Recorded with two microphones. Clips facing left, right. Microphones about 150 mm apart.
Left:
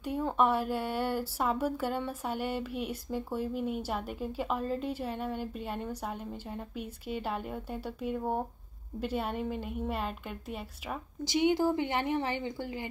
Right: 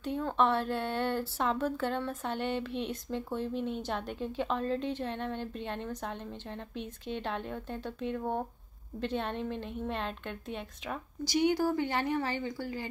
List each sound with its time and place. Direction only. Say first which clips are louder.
0.0 s speech: left 1 dB; 10° left (ahead or behind)
11.2 s speech: left 1 dB; 20° left (ahead or behind)